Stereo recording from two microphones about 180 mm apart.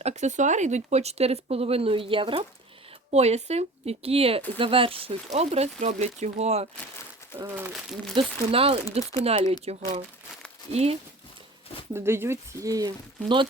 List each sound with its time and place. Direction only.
0.0 s speech: 40° right (ahead or behind)
7.3 s speech: 15° right (ahead or behind)
7.7 s speech: centre (ahead or behind)
8.1 s speech: 30° right (ahead or behind)
11.9 s speech: 15° right (ahead or behind)